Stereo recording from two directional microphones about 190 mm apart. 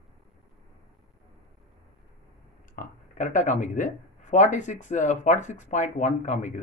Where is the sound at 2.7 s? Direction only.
40° left (ahead or behind).